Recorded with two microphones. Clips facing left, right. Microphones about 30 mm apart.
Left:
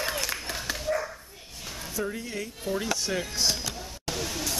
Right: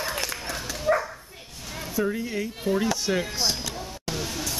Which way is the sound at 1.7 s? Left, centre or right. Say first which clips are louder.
Right 6 dB; centre.